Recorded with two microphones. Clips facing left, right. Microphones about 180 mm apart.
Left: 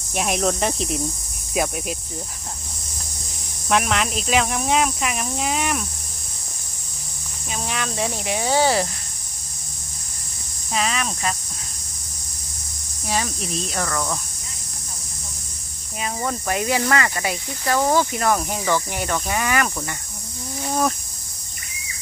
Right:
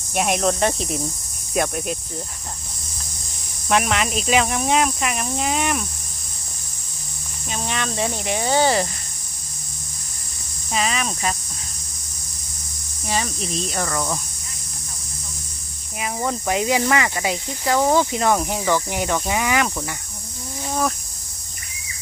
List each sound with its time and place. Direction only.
0.1 s speech: centre (ahead or behind)
3.7 s speech: centre (ahead or behind)
7.5 s speech: 5° left (ahead or behind)
10.7 s speech: centre (ahead or behind)
13.1 s speech: centre (ahead or behind)
16.0 s speech: 10° right (ahead or behind)